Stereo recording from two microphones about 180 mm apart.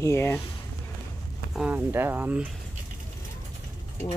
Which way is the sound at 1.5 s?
10° right (ahead or behind).